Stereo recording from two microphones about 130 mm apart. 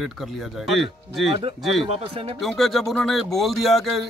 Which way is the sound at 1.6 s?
Centre (ahead or behind).